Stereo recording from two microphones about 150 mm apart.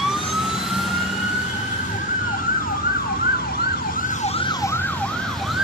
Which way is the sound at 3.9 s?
60° left (ahead or behind).